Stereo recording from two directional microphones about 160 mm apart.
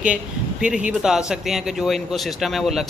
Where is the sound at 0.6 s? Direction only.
5° right (ahead or behind).